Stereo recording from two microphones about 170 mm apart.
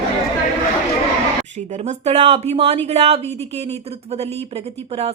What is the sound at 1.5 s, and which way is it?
A woman's voice, 40° right (ahead or behind).